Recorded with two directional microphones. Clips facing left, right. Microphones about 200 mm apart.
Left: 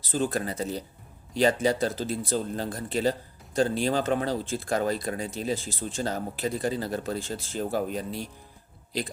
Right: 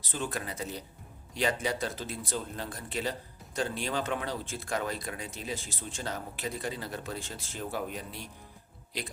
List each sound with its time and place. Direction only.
0.1 s speech: 40° left (ahead or behind)